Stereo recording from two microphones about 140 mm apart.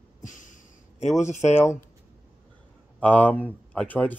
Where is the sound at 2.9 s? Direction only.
10° left (ahead or behind).